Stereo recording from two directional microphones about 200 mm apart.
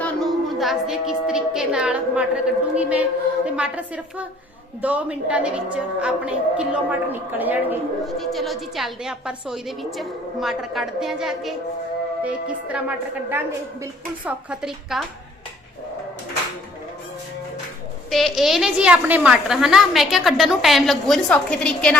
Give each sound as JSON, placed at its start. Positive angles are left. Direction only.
{"t": 0.0, "sound": "a woman's voice", "side_deg": 0}
{"t": 14.3, "sound": "a woman's voice", "side_deg": -5}
{"t": 18.1, "sound": "a woman's voice", "side_deg": 0}